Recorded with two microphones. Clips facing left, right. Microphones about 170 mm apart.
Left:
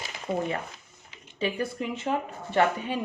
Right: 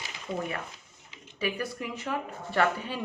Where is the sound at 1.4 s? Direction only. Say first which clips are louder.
Left 3 dB; 25° left (ahead or behind).